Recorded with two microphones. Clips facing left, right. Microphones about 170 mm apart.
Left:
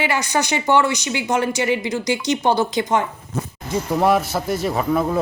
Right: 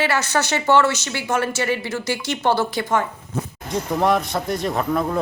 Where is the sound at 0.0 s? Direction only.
15° left (ahead or behind).